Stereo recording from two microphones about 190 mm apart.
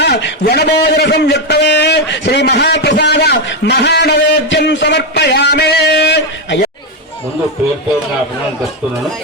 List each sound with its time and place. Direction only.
0.0 s a man's voice: 65° left (ahead or behind)